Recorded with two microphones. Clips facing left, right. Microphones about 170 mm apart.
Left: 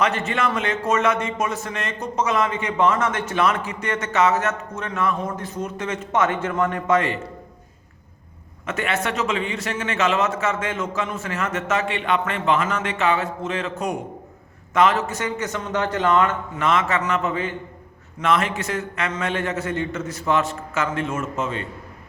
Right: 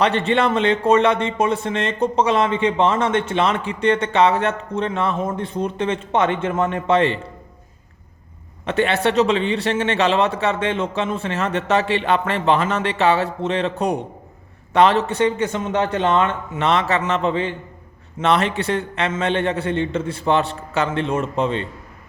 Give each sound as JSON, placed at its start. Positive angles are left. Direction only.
{"t": 0.0, "sound": "a man's voice", "side_deg": -30}
{"t": 8.6, "sound": "a man's voice", "side_deg": -30}